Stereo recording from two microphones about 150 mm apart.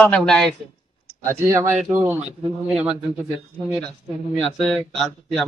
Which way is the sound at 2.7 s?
5° right (ahead or behind).